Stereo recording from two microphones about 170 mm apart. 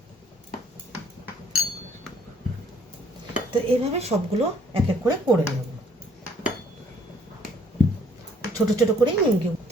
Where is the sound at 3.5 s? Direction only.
40° right (ahead or behind).